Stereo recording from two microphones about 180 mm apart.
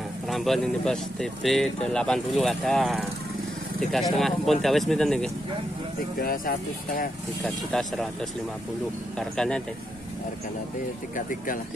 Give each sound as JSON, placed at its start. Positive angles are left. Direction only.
{"t": 0.3, "sound": "speech", "side_deg": 0}
{"t": 6.2, "sound": "speech", "side_deg": 50}
{"t": 7.4, "sound": "speech", "side_deg": 0}
{"t": 9.2, "sound": "speech", "side_deg": 5}
{"t": 11.1, "sound": "speech", "side_deg": 50}